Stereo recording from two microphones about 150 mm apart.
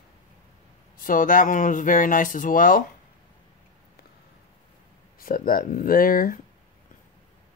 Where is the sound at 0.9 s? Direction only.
65° left (ahead or behind).